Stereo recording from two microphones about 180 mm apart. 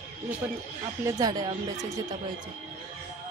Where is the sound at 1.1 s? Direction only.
20° right (ahead or behind).